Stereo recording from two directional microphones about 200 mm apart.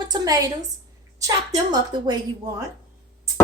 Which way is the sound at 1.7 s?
20° right (ahead or behind).